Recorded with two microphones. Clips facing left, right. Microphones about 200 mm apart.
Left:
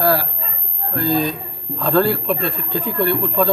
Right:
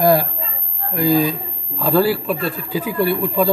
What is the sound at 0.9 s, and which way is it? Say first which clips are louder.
Speech: right 3 dB; 10° right (ahead or behind).